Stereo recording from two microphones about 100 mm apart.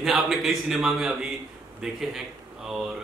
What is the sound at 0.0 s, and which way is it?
A man's voice, centre (ahead or behind).